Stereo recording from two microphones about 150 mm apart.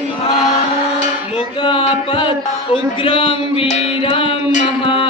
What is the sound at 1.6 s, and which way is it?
Music, 35° left (ahead or behind).